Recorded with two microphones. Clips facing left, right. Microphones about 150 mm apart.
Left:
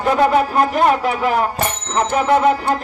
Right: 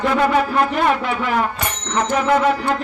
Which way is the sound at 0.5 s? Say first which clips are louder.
Left 2 dB; 40° left (ahead or behind).